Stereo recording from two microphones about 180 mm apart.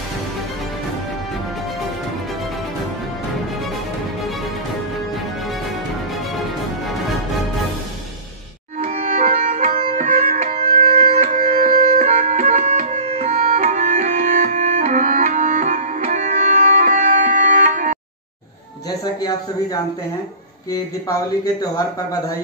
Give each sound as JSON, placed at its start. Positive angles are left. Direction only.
{"t": 8.8, "sound": "music", "side_deg": -40}
{"t": 10.0, "sound": "music", "side_deg": -50}
{"t": 10.5, "sound": "music", "side_deg": -35}
{"t": 10.8, "sound": "music", "side_deg": -50}
{"t": 18.9, "sound": "a man's voice", "side_deg": 20}